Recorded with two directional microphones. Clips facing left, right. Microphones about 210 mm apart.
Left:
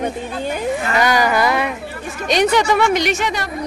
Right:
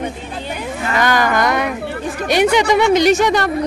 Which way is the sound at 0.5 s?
45° left (ahead or behind).